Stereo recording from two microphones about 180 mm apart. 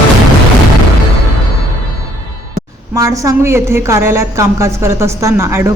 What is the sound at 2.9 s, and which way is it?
A woman's voice, 20° right (ahead or behind).